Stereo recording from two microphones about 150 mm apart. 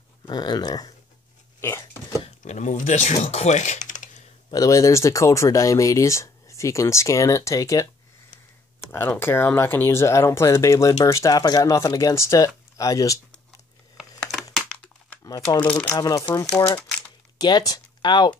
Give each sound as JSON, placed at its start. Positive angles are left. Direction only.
{"t": 0.3, "sound": "speech", "side_deg": 30}
{"t": 2.2, "sound": "speech", "side_deg": 50}
{"t": 4.5, "sound": "speech", "side_deg": 25}
{"t": 8.9, "sound": "speech", "side_deg": 15}
{"t": 13.9, "sound": "a sound", "side_deg": 0}
{"t": 15.2, "sound": "speech", "side_deg": 25}
{"t": 15.6, "sound": "speech", "side_deg": 10}
{"t": 16.0, "sound": "speech", "side_deg": 25}
{"t": 17.4, "sound": "speech", "side_deg": 25}